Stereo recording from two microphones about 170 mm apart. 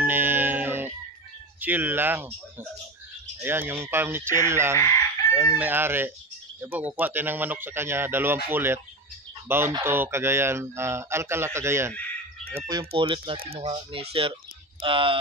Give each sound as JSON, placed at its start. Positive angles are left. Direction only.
{"t": 0.0, "sound": "music", "side_deg": -10}
{"t": 1.6, "sound": "speech", "side_deg": -10}
{"t": 3.4, "sound": "speech", "side_deg": -15}
{"t": 12.6, "sound": "speech", "side_deg": -30}